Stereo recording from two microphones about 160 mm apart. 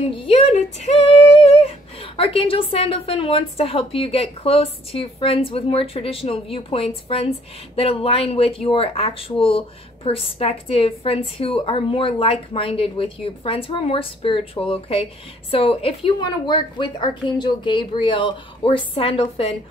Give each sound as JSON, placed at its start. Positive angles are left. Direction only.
{"t": 0.1, "sound": "female singing", "side_deg": 35}